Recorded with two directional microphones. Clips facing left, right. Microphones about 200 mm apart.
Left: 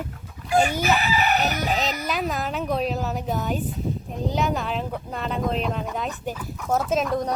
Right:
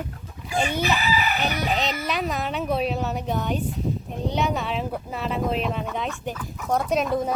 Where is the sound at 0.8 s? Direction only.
45° left (ahead or behind).